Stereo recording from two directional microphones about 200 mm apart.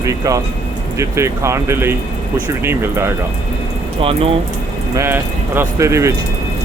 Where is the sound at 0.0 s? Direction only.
15° right (ahead or behind).